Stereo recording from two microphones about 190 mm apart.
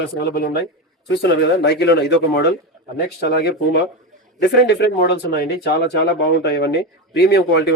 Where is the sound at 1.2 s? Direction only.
60° left (ahead or behind).